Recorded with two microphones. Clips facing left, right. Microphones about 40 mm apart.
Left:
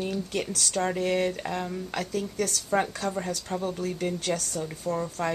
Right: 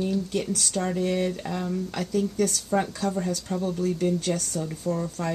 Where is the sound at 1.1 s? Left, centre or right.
Left.